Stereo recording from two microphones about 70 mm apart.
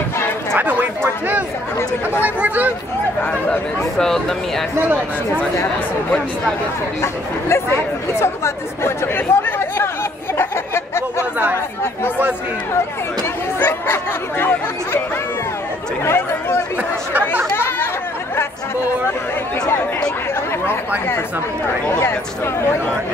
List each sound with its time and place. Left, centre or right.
2.2 s speech: right
3.2 s speech: left
4.0 s speech: centre
7.0 s speech: left
10.3 s chatter: left
11.5 s speech: left
13.6 s speech: left
17.6 s chatter: left